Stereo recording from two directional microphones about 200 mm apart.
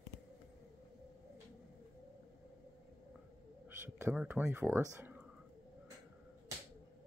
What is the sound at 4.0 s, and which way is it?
Speech, 5° right (ahead or behind).